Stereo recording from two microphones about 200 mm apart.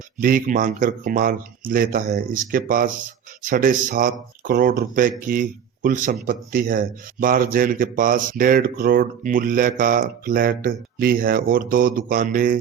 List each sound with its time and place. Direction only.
0.2 s speech: 45° right (ahead or behind)